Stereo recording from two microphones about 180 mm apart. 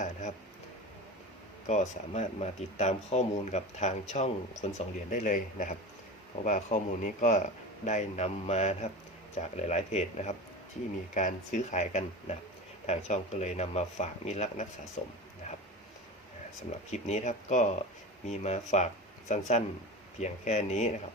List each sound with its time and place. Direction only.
0.0 s a sound: 40° left (ahead or behind)
1.6 s speech: 40° left (ahead or behind)
16.9 s speech: 40° left (ahead or behind)